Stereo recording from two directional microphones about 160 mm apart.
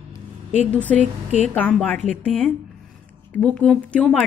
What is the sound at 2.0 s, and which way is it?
Speech, 45° right (ahead or behind).